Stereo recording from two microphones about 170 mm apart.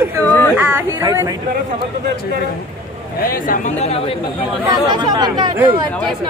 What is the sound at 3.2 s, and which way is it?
Speech, 55° left (ahead or behind).